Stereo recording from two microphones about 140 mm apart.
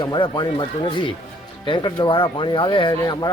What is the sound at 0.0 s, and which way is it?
Speech, 35° left (ahead or behind).